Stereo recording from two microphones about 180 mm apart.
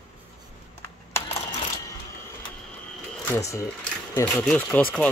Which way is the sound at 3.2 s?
15° left (ahead or behind).